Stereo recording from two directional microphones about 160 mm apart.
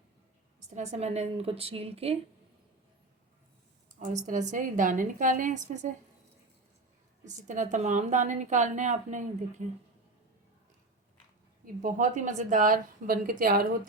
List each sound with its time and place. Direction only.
0.7 s a woman's voice: 45° right (ahead or behind)
4.0 s a woman's voice: 50° right (ahead or behind)
7.3 s a woman's voice: 50° right (ahead or behind)
11.6 s a woman's voice: 55° right (ahead or behind)